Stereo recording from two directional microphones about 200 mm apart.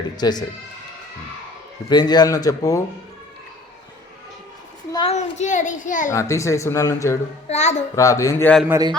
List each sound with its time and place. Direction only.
0.2 s a man's voice: 20° left (ahead or behind)
1.9 s a man's voice: 20° left (ahead or behind)
4.9 s a sound: 20° left (ahead or behind)
5.1 s a child's voice: 35° left (ahead or behind)
6.1 s a woman's voice: 15° left (ahead or behind)
7.4 s a child's voice: 35° left (ahead or behind)
7.9 s a woman's voice: 15° left (ahead or behind)
8.6 s a man's voice: 10° right (ahead or behind)